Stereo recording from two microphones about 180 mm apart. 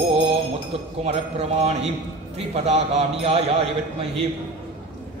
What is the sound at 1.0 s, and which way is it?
A man's voice, 35° right (ahead or behind).